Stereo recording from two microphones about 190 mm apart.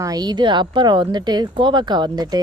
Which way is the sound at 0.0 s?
20° right (ahead or behind).